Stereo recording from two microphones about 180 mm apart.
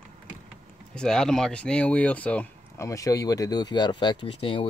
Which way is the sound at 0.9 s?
5° left (ahead or behind).